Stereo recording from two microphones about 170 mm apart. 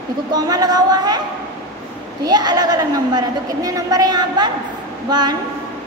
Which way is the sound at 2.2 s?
25° right (ahead or behind).